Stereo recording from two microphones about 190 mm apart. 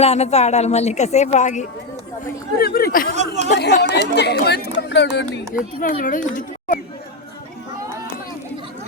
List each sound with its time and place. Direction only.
0.0 s speech: 35° left (ahead or behind)
2.6 s a child's voice: 55° left (ahead or behind)
3.2 s speech: 35° right (ahead or behind)
3.5 s speech: 55° left (ahead or behind)
5.8 s a child's voice: 45° left (ahead or behind)